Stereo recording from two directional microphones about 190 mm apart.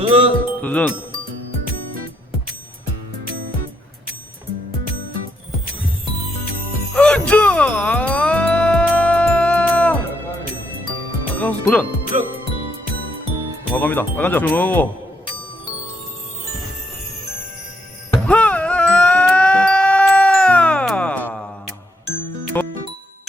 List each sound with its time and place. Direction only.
0.0 s speech: 25° right (ahead or behind)
0.6 s speech: 5° left (ahead or behind)
6.9 s music: 5° left (ahead or behind)
11.3 s music: 10° left (ahead or behind)
12.1 s speech: 35° right (ahead or behind)
13.7 s speech: 10° left (ahead or behind)
18.3 s a sound: 5° left (ahead or behind)
22.5 s music: 10° left (ahead or behind)